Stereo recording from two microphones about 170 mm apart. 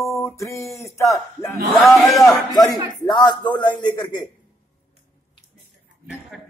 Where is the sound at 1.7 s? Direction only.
Centre (ahead or behind).